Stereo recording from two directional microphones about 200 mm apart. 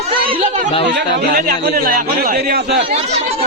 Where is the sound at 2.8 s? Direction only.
30° right (ahead or behind).